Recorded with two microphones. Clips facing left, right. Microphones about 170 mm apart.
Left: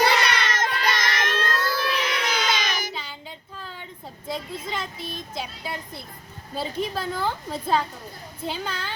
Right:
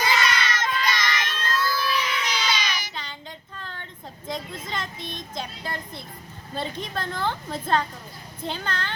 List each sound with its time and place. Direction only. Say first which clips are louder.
0.0 s child singing: left 3 dB; 65° left (ahead or behind); by 2.9 s 50° left (ahead or behind)
2.9 s child singing: left 1 dB; 5° left (ahead or behind)
4.3 s a woman's voice: left 1 dB; 10° left (ahead or behind)